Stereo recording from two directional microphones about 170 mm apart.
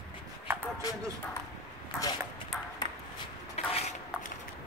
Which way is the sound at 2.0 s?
25° left (ahead or behind).